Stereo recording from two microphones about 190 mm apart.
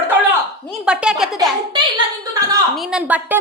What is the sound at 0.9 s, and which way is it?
Speech, 5° right (ahead or behind).